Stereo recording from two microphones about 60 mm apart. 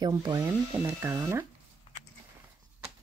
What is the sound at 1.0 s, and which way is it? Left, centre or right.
Speech, right.